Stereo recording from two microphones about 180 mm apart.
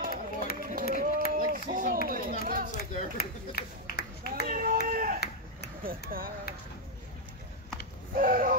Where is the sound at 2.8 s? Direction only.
60° left (ahead or behind).